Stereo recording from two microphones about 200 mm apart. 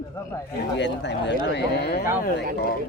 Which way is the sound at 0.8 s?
60° left (ahead or behind).